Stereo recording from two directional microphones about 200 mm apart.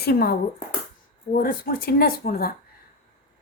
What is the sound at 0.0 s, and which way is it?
Speech, 50° left (ahead or behind).